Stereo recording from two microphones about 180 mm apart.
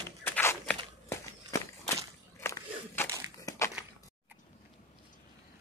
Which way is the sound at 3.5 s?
20° left (ahead or behind).